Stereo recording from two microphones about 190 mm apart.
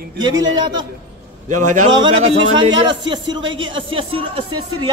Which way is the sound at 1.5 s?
40° right (ahead or behind).